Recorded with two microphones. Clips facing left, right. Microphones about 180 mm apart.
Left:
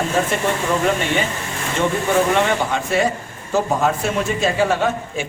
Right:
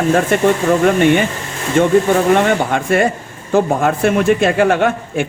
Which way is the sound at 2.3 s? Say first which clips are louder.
Right 5 dB; 55° right (ahead or behind).